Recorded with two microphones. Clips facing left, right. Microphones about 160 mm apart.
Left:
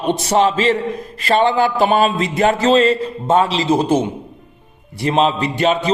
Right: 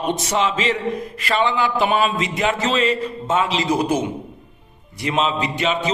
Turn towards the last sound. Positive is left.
turn(degrees=35)  # may be behind; listen again after turning